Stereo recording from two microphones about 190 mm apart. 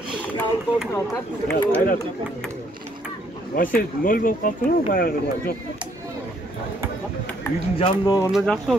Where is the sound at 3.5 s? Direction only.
50° left (ahead or behind).